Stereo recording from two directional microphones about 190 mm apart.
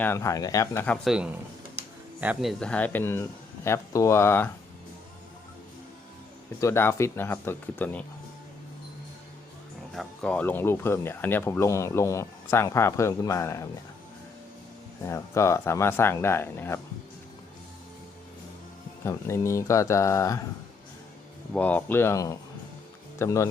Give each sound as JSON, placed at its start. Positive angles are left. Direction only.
{"t": 0.0, "sound": "speech", "side_deg": 15}
{"t": 1.0, "sound": "a man's voice", "side_deg": -5}
{"t": 6.6, "sound": "speech", "side_deg": 15}
{"t": 9.9, "sound": "speech", "side_deg": 5}
{"t": 15.0, "sound": "speech", "side_deg": 15}
{"t": 19.0, "sound": "speech", "side_deg": 15}
{"t": 21.5, "sound": "speech", "side_deg": 10}